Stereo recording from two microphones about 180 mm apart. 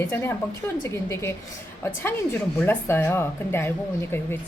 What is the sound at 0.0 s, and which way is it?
A woman's voice, 15° left (ahead or behind).